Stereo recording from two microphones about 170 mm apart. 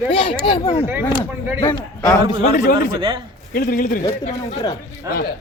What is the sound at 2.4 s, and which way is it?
A man's voice, 50° left (ahead or behind).